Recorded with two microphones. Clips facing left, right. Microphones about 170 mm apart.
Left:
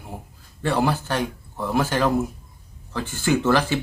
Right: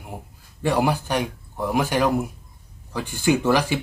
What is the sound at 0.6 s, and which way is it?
Speech, 15° right (ahead or behind).